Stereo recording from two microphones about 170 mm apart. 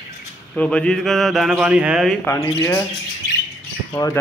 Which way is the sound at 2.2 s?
20° left (ahead or behind).